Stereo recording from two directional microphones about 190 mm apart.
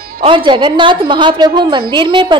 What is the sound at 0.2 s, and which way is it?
A woman's voice, 25° right (ahead or behind).